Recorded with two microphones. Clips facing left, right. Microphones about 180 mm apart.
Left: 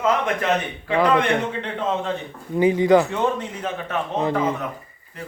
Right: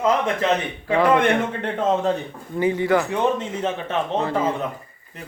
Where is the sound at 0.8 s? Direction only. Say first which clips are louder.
Right 2 dB; 45° right (ahead or behind).